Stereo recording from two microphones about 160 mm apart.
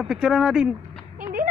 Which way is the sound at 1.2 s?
60° right (ahead or behind).